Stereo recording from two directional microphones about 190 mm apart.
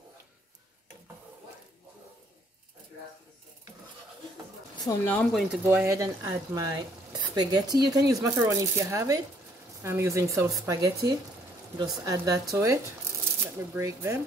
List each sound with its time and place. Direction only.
4.8 s speech: 10° left (ahead or behind)
5.6 s speech: 10° right (ahead or behind)
13.7 s speech: 15° right (ahead or behind)